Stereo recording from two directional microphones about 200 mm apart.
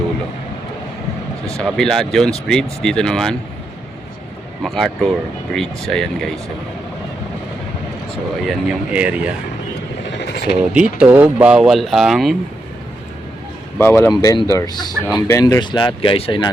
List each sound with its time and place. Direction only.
1.5 s speech: 5° left (ahead or behind)
4.6 s speech: centre (ahead or behind)
8.4 s speech: 5° right (ahead or behind)
10.1 s vehicle: 60° left (ahead or behind)
10.7 s speech: 5° right (ahead or behind)
13.7 s speech: 10° left (ahead or behind)
14.1 s speech: 20° left (ahead or behind)